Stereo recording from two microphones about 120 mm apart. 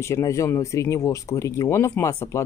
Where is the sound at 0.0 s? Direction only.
25° left (ahead or behind).